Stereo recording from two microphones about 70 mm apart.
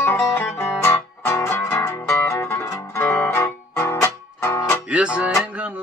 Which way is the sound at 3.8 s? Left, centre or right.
Left.